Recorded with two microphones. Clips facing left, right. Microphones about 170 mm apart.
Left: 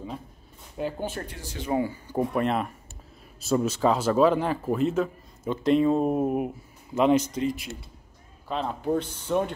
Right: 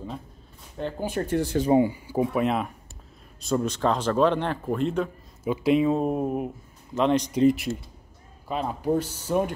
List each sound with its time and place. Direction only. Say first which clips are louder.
0.9 s speech: right 4 dB; 10° right (ahead or behind)
1.2 s speech: right 15 dB; 55° right (ahead or behind)
1.7 s speech: right 5 dB; 20° right (ahead or behind)
2.0 s speech: right 1 dB; 5° right (ahead or behind)
7.4 s speech: right 9 dB; 60° right (ahead or behind)
8.5 s speech: right 1 dB; 5° right (ahead or behind)